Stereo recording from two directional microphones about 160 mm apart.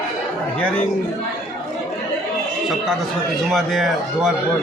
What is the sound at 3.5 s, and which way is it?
Speech, centre (ahead or behind).